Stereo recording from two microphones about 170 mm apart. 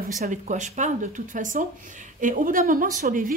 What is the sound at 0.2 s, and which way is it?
A woman's voice, 45° right (ahead or behind).